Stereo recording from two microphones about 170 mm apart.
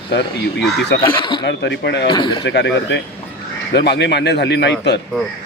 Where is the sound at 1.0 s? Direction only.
25° left (ahead or behind).